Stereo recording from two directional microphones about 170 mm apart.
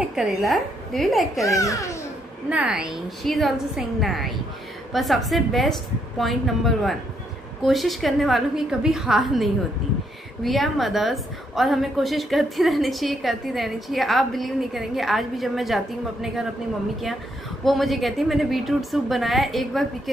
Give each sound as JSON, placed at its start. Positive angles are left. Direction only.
{"t": 0.0, "sound": "a woman's voice", "side_deg": -5}
{"t": 1.6, "sound": "a child's voice", "side_deg": 20}
{"t": 2.5, "sound": "a woman's voice", "side_deg": -5}
{"t": 17.6, "sound": "a woman's voice", "side_deg": 0}